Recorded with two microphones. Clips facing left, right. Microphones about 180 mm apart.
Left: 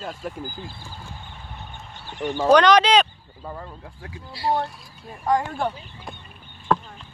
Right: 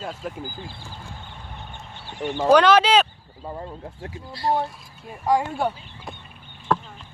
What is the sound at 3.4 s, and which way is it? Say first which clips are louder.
Speech: right 2 dB; 25° right (ahead or behind).